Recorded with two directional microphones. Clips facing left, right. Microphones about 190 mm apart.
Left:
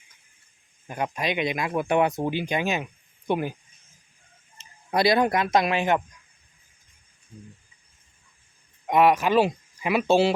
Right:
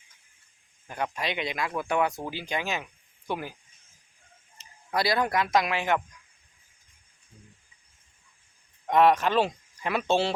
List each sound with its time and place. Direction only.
0.9 s speech: 15° left (ahead or behind)
4.5 s speech: 20° left (ahead or behind)
8.9 s speech: 10° left (ahead or behind)